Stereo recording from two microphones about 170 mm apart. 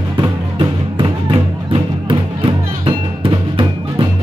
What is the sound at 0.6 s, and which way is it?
Music, 30° right (ahead or behind).